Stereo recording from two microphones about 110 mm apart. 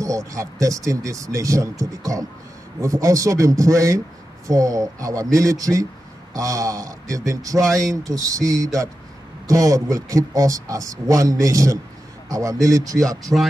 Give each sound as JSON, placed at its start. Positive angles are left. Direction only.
{"t": 0.0, "sound": "speech", "side_deg": -30}